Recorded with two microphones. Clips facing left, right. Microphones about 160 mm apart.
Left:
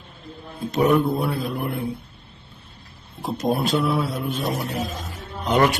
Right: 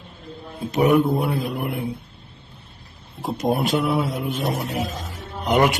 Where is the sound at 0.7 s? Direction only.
15° right (ahead or behind).